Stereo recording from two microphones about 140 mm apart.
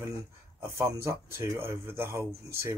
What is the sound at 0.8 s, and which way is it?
Speech, 20° right (ahead or behind).